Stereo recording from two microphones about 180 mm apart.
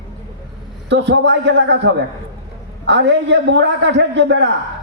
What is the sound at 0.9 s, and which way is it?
A man's voice, 75° right (ahead or behind).